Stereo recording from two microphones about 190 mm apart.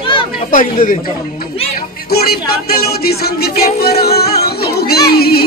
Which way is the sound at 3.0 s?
55° left (ahead or behind).